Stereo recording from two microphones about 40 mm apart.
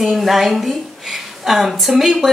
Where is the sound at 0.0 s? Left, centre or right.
Centre.